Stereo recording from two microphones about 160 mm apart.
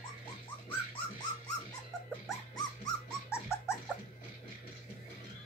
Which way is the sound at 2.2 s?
25° left (ahead or behind).